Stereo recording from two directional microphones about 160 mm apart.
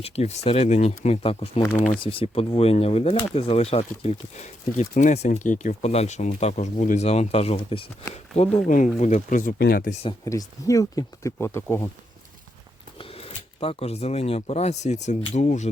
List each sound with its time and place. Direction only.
0.0 s speech: 40° left (ahead or behind)
1.6 s speech: 10° left (ahead or behind)
2.0 s speech: 35° left (ahead or behind)
8.6 s speech: 50° left (ahead or behind)
9.6 s speech: 75° left (ahead or behind)
9.9 s speech: 40° left (ahead or behind)
10.2 s speech: 20° left (ahead or behind)
13.0 s speech: 35° left (ahead or behind)